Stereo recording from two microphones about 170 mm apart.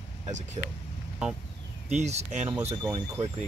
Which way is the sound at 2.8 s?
25° right (ahead or behind).